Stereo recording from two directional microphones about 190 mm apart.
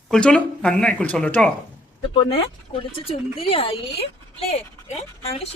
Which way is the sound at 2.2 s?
30° left (ahead or behind).